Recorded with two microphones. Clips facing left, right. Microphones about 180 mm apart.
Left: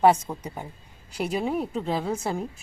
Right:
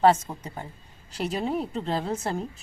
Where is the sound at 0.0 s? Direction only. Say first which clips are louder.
Left 1 dB; 15° left (ahead or behind).